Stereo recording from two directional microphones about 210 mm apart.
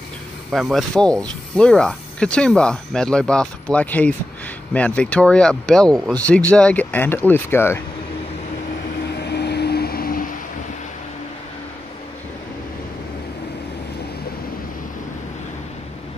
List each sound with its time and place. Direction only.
0.5 s speech: centre (ahead or behind)
9.1 s vehicle: 50° left (ahead or behind)